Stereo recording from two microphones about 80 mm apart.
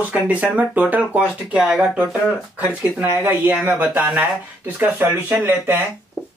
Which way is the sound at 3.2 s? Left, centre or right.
Right.